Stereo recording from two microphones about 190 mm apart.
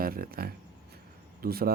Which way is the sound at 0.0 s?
50° right (ahead or behind).